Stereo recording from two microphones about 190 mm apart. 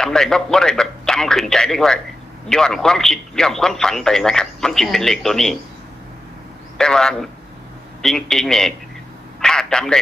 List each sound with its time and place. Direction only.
0.0 s a man's voice: 5° left (ahead or behind)
6.8 s a man's voice: 5° left (ahead or behind)
9.4 s telephone: 5° left (ahead or behind)